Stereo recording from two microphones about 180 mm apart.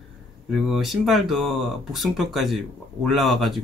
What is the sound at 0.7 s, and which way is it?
Speech, centre (ahead or behind).